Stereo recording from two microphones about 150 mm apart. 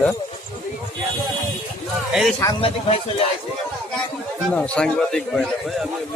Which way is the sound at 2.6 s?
40° left (ahead or behind).